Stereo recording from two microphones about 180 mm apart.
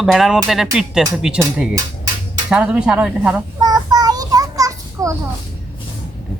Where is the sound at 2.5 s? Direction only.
5° right (ahead or behind).